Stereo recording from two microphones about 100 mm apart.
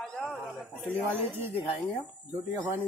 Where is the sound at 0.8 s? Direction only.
20° right (ahead or behind).